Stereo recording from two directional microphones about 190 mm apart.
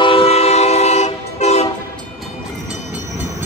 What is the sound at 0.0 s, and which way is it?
Train, 30° left (ahead or behind).